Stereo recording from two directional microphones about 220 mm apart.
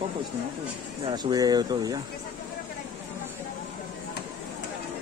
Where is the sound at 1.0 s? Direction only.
15° right (ahead or behind).